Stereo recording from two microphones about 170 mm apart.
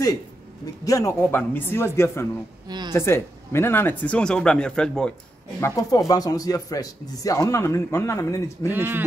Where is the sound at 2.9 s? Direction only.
15° left (ahead or behind).